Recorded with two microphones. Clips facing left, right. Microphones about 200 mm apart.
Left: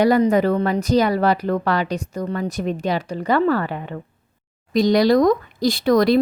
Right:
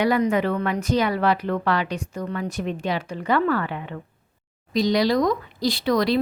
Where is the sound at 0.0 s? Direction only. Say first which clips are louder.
Left 5 dB; 40° left (ahead or behind).